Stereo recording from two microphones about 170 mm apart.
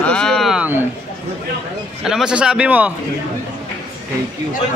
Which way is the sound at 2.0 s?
5° right (ahead or behind).